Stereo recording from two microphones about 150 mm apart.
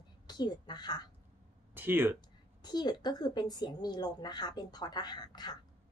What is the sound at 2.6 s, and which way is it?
A woman's voice, 30° left (ahead or behind).